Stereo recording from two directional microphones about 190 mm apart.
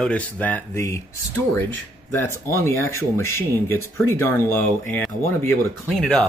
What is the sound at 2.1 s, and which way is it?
Speech, 15° left (ahead or behind).